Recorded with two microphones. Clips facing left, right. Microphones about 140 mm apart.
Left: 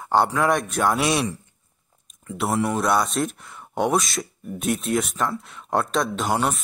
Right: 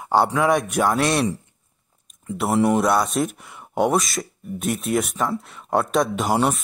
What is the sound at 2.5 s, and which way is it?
Speech, 25° right (ahead or behind).